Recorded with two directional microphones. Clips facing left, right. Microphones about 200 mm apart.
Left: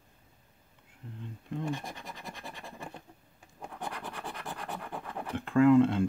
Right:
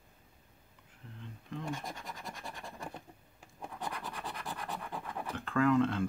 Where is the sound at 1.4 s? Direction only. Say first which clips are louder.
Left 5 dB; 25° left (ahead or behind).